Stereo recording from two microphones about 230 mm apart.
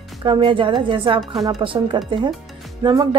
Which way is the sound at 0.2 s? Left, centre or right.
Right.